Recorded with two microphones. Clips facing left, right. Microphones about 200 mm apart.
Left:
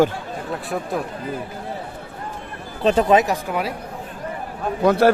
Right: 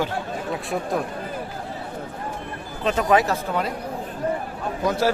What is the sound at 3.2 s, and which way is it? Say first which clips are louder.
Speech: left 1 dB; 15° left (ahead or behind).